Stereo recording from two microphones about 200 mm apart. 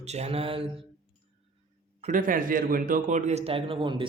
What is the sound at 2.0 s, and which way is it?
A man's voice, 40° right (ahead or behind).